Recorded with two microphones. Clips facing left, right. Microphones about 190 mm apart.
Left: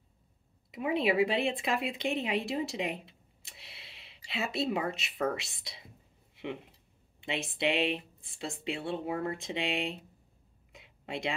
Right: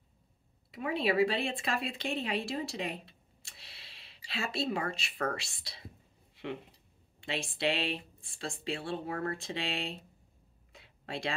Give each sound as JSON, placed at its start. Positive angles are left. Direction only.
{"t": 0.7, "sound": "speech", "side_deg": 15}
{"t": 7.2, "sound": "speech", "side_deg": 20}
{"t": 10.7, "sound": "a sound", "side_deg": 20}